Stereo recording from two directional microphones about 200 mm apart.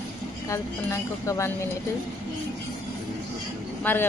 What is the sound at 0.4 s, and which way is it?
A woman's voice, 15° left (ahead or behind).